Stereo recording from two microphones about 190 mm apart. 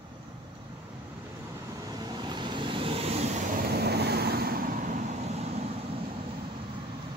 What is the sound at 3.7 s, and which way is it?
Vehicle, 60° right (ahead or behind).